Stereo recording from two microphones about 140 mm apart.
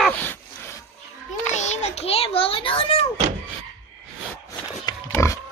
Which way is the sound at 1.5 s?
55° left (ahead or behind).